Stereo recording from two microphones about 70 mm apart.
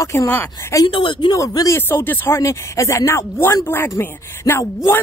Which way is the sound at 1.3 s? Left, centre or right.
Left.